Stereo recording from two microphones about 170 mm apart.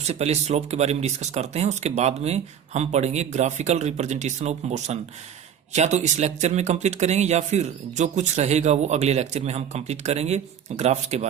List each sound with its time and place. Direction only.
0.0 s speech: 40° right (ahead or behind)